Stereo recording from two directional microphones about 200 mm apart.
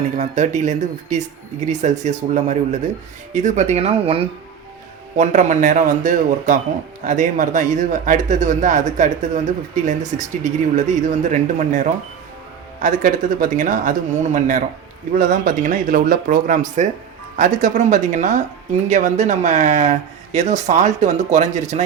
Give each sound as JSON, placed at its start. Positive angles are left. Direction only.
{"t": 0.2, "sound": "speech", "side_deg": -35}